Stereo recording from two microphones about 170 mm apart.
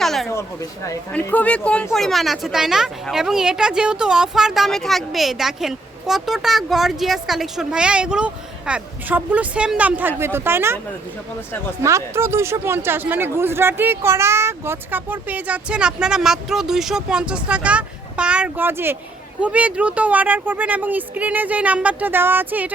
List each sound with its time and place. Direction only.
0.0 s a sound: centre (ahead or behind)
0.3 s speech: 15° left (ahead or behind); by 10.8 s 15° right (ahead or behind)
11.8 s speech: 15° right (ahead or behind)